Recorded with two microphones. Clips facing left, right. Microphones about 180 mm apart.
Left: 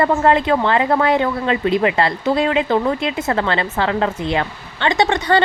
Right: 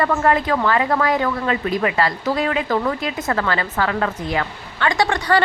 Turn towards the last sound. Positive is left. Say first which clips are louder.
# left 2 dB
turn(degrees=20)  # may be behind; listen again after turning